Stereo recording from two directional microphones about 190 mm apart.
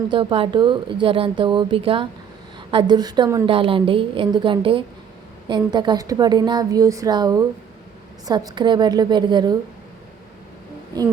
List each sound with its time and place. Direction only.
0.1 s speech: 30° right (ahead or behind)